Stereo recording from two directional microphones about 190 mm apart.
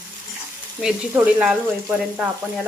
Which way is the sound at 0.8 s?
5° right (ahead or behind).